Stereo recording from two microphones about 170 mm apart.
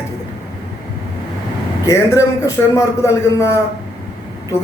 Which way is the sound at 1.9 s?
15° left (ahead or behind).